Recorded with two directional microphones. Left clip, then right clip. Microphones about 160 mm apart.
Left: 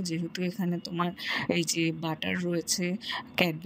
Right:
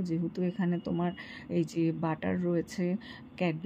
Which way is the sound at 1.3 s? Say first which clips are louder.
Left 7 dB; 55° left (ahead or behind).